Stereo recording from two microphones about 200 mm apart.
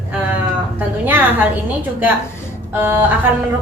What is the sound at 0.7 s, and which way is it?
Speech, 10° right (ahead or behind).